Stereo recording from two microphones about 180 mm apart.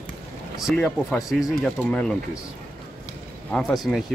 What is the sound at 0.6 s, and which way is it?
Speech, centre (ahead or behind).